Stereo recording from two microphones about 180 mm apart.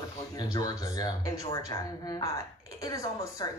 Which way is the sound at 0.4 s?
20° left (ahead or behind).